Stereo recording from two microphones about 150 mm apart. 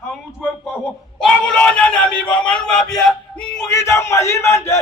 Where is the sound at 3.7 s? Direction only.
20° left (ahead or behind).